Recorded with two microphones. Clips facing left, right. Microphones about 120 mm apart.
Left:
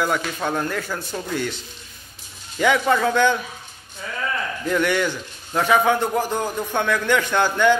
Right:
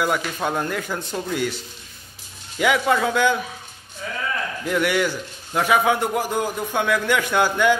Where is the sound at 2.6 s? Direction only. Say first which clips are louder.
Left 1 dB; 5° right (ahead or behind).